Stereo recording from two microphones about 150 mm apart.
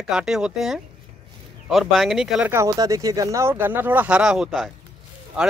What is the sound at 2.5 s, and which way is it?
Speech, 20° right (ahead or behind).